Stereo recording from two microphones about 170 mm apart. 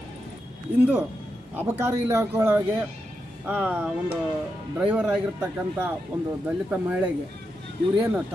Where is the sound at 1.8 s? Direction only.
15° right (ahead or behind).